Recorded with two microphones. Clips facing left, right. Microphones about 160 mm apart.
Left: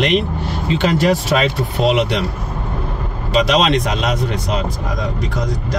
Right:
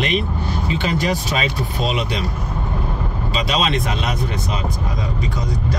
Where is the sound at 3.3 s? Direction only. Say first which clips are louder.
Left 7 dB; 75° left (ahead or behind).